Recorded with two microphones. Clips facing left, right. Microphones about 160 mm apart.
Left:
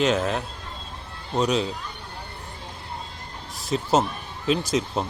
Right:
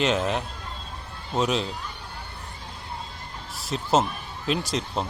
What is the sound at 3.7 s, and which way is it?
Speech, centre (ahead or behind).